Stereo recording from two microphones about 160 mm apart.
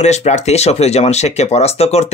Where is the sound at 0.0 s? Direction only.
45° left (ahead or behind).